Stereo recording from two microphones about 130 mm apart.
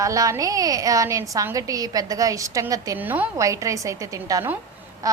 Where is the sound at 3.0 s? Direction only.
15° right (ahead or behind).